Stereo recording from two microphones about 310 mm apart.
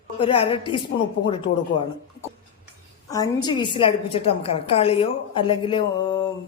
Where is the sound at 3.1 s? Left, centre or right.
Centre.